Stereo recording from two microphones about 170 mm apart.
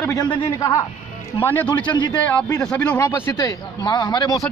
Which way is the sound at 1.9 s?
25° left (ahead or behind).